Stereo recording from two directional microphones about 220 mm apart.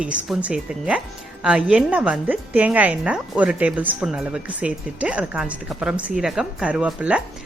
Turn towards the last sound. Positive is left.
turn(degrees=-5)  # may be behind; listen again after turning